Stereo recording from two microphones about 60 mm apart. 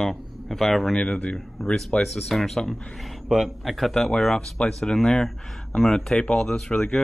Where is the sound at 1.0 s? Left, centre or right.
Left.